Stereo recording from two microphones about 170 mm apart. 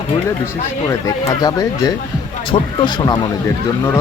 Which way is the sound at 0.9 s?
20° left (ahead or behind).